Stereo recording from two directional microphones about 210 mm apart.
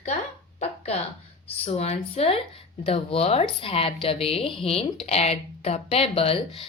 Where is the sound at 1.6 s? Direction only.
30° left (ahead or behind).